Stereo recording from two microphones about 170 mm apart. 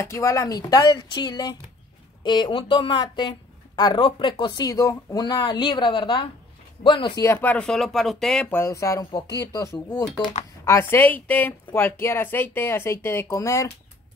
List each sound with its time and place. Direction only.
0.0 s speech: 15° left (ahead or behind)
7.2 s speech: 10° left (ahead or behind)